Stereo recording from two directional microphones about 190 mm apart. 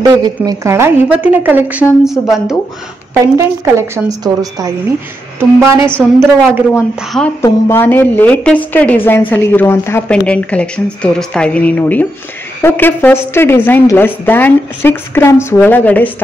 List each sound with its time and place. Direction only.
0.0 s a woman's voice: 20° right (ahead or behind); by 2.5 s centre (ahead or behind)
3.3 s a woman's voice: 15° right (ahead or behind)
7.1 s speech: 5° left (ahead or behind)
7.4 s a woman's voice: 15° left (ahead or behind)